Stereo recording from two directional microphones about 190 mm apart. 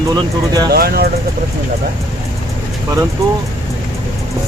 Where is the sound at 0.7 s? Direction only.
55° right (ahead or behind).